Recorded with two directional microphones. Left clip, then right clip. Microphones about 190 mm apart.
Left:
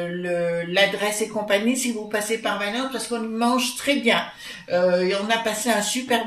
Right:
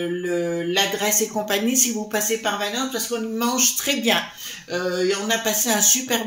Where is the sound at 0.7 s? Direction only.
45° right (ahead or behind).